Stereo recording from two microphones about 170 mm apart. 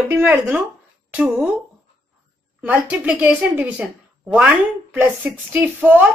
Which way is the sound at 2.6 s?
10° right (ahead or behind).